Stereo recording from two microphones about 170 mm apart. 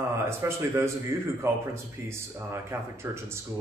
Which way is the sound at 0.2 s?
15° right (ahead or behind).